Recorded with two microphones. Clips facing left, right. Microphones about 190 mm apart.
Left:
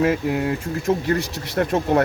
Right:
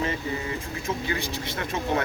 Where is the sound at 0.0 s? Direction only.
75° left (ahead or behind).